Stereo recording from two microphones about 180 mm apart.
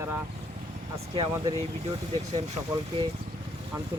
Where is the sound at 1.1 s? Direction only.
25° right (ahead or behind).